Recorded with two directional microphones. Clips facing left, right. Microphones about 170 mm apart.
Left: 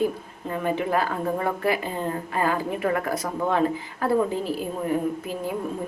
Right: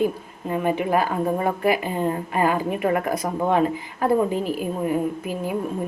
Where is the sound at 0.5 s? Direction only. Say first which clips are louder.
Right 3 dB; 15° right (ahead or behind).